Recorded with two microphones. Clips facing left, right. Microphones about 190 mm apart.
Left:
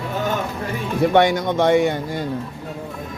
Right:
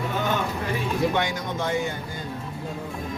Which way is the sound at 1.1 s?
70° left (ahead or behind).